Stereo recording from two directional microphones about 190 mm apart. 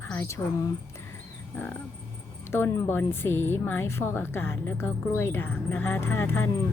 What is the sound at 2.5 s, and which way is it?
A woman's voice, 10° left (ahead or behind).